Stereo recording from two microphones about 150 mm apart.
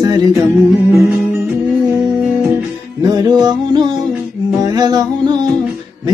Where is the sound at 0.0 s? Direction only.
25° right (ahead or behind).